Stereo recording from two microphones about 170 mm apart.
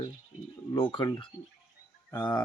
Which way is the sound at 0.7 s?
30° left (ahead or behind).